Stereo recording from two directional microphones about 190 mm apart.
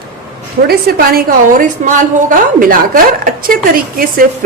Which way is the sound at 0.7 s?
55° right (ahead or behind).